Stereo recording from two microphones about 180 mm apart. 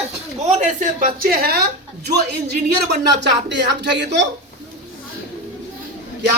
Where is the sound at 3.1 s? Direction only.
75° right (ahead or behind).